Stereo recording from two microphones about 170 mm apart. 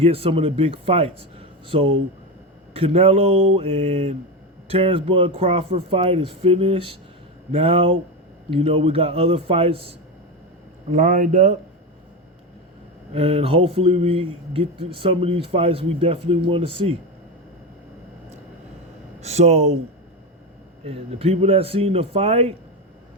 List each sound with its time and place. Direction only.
0.0 s speech: 35° right (ahead or behind)
10.9 s speech: 50° right (ahead or behind)
13.1 s speech: 35° right (ahead or behind)
19.2 s speech: 40° right (ahead or behind)
20.8 s speech: 35° right (ahead or behind)